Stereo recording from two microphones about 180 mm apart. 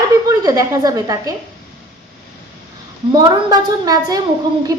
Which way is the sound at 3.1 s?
25° right (ahead or behind).